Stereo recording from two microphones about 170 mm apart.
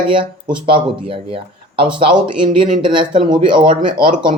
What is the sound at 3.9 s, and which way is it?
Speech, 55° right (ahead or behind).